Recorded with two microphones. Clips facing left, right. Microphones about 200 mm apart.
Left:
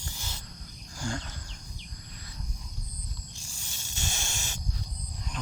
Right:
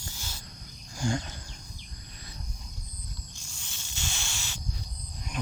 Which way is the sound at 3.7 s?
40° left (ahead or behind).